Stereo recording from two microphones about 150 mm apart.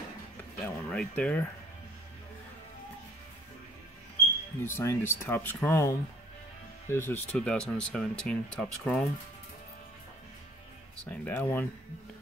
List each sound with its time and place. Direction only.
0.7 s speech: 10° left (ahead or behind)
4.6 s speech: 15° left (ahead or behind)
11.1 s speech: 10° left (ahead or behind)